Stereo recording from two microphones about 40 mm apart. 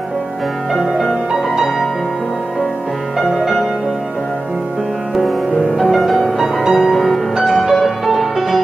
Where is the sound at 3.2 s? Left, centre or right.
Centre.